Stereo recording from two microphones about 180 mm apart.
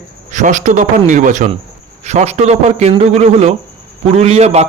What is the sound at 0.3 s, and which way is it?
A man's voice, 45° right (ahead or behind).